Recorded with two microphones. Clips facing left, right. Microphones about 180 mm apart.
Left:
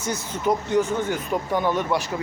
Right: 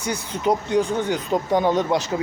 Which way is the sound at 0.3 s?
15° right (ahead or behind).